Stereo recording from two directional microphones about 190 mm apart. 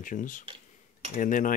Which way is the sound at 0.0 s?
45° left (ahead or behind).